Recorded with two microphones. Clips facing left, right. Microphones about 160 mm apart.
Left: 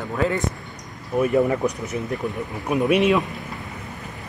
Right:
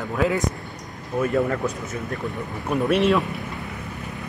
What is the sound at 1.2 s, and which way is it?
Speech, 15° left (ahead or behind).